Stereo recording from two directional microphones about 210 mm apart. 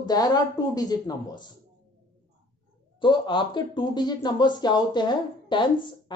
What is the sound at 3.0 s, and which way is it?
Speech, 20° left (ahead or behind).